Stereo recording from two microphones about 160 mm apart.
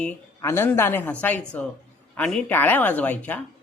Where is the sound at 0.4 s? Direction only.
15° left (ahead or behind).